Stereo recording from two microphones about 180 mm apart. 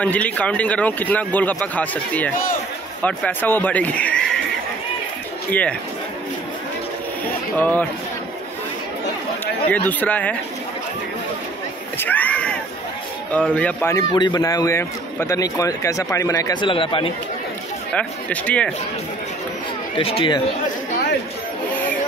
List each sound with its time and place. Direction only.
0.0 s speech: 10° left (ahead or behind)
5.5 s speech: 10° left (ahead or behind)
7.2 s a sound: 10° left (ahead or behind)
9.7 s speech: 10° left (ahead or behind)
12.0 s a sound: 10° left (ahead or behind)
13.5 s speech: 10° left (ahead or behind)
14.1 s a man's voice: 25° left (ahead or behind)
16.7 s a man's voice: 30° left (ahead or behind)
17.9 s speech: 5° left (ahead or behind)
20.0 s speech: 30° left (ahead or behind)